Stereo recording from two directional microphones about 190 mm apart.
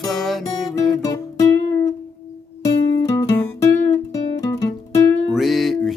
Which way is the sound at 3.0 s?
15° left (ahead or behind).